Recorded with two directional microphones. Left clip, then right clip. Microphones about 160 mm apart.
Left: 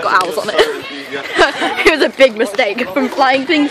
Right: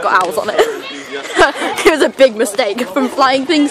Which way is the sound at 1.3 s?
20° right (ahead or behind).